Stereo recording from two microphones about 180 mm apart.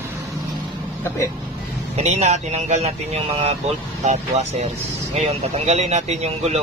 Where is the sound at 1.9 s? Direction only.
40° right (ahead or behind).